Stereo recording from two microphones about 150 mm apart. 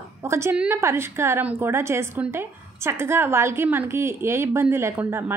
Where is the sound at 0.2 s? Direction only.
15° right (ahead or behind).